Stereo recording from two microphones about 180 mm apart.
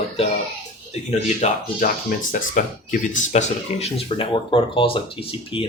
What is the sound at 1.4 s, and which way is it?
Speech, 50° left (ahead or behind).